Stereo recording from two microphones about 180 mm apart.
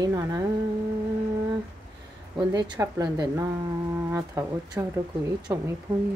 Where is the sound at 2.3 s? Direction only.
25° right (ahead or behind).